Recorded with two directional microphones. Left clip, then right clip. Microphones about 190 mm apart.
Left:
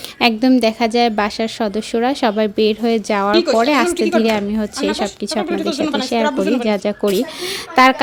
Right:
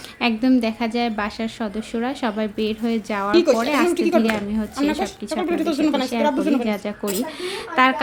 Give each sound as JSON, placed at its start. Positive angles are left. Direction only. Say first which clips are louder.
{"t": 0.2, "sound": "a woman's voice", "louder": "left 6 dB", "side_deg": 35}
{"t": 3.3, "sound": "speech", "louder": "even", "side_deg": -10}
{"t": 3.6, "sound": "a woman's voice", "louder": "left 5 dB", "side_deg": 35}
{"t": 3.9, "sound": "speech", "louder": "left 2 dB", "side_deg": -5}
{"t": 4.2, "sound": "a woman's voice", "louder": "left 5 dB", "side_deg": 35}
{"t": 5.4, "sound": "speech", "louder": "left 2 dB", "side_deg": -15}
{"t": 6.0, "sound": "a woman's voice", "louder": "left 4 dB", "side_deg": 35}
{"t": 6.2, "sound": "speech", "louder": "left 3 dB", "side_deg": -5}
{"t": 6.7, "sound": "a woman's voice", "louder": "left 8 dB", "side_deg": 30}